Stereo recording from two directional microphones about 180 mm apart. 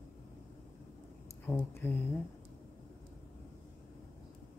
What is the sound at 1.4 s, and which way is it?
Speech, 10° left (ahead or behind).